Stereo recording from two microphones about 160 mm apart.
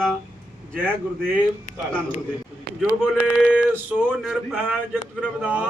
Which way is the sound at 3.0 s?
5° right (ahead or behind).